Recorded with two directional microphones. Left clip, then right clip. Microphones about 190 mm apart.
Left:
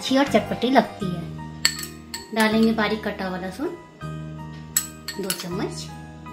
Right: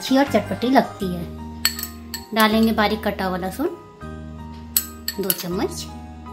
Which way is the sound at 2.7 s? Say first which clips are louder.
Right 4 dB; 50° right (ahead or behind).